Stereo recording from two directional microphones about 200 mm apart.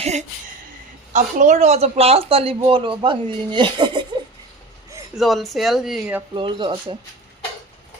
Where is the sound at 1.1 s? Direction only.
40° right (ahead or behind); by 4.0 s 25° right (ahead or behind).